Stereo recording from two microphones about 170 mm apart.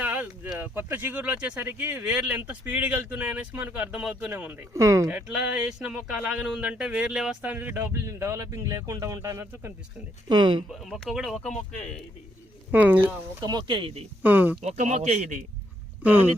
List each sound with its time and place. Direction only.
0.0 s speech: 10° right (ahead or behind)
5.3 s speech: 5° right (ahead or behind)
10.2 s speech: 25° right (ahead or behind)
10.7 s speech: centre (ahead or behind)
11.5 s speech: 45° left (ahead or behind)
12.7 s speech: 10° right (ahead or behind)
13.4 s speech: 25° right (ahead or behind)
14.2 s speech: 10° right (ahead or behind)
14.6 s a man's voice: 40° right (ahead or behind)
16.0 s speech: 10° right (ahead or behind)